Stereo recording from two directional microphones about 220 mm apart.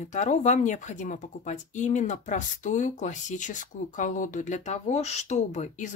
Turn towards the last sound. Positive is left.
turn(degrees=30)  # may be behind; listen again after turning